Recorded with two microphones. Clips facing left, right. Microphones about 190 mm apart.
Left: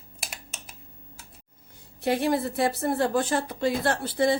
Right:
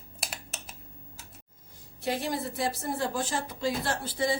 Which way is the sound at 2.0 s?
60° left (ahead or behind).